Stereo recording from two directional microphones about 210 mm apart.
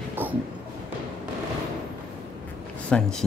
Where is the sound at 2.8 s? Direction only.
5° left (ahead or behind).